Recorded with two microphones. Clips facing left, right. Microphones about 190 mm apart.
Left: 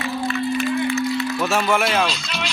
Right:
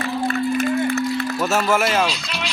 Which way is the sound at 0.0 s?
50° right (ahead or behind).